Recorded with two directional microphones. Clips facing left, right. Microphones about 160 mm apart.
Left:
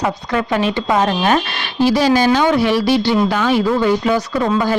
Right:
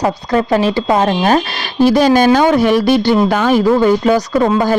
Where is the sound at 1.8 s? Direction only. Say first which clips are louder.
Right 4 dB; 50° right (ahead or behind).